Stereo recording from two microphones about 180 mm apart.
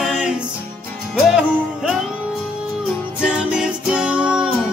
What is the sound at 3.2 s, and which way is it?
Music, 5° right (ahead or behind).